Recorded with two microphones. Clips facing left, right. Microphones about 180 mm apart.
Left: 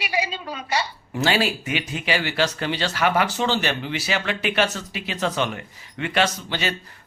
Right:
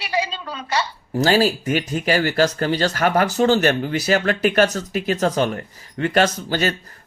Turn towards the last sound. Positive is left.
turn(degrees=-45)  # may be behind; listen again after turning